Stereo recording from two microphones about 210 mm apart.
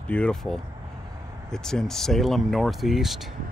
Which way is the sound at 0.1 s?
5° left (ahead or behind).